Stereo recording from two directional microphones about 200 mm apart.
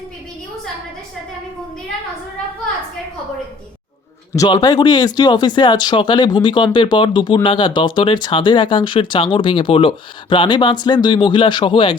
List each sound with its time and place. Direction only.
4.4 s speech: 20° left (ahead or behind)